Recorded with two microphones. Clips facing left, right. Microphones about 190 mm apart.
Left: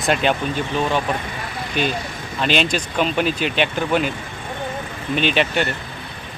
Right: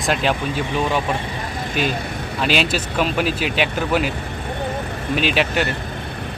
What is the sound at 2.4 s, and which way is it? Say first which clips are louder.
Speech: even; 5° right (ahead or behind).